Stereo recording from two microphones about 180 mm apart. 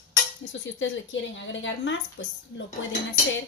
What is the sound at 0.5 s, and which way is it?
A woman's voice, 90° left.